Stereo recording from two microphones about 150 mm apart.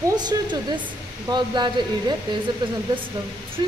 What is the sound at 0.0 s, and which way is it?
Speech, 30° right (ahead or behind).